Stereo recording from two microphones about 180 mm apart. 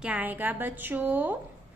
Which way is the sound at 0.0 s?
10° right (ahead or behind).